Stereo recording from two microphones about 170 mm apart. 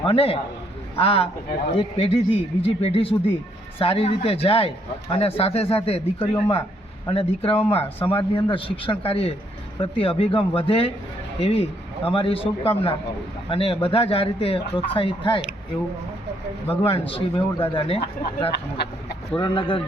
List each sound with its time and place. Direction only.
0.0 s speech: 35° left (ahead or behind)
12.0 s speech: 30° left (ahead or behind)
16.8 s speech: 35° left (ahead or behind)
18.5 s speech: 75° left (ahead or behind)
19.4 s speech: 30° left (ahead or behind)